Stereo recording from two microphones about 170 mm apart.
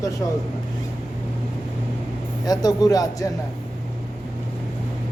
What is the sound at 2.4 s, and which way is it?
Speech, 20° left (ahead or behind).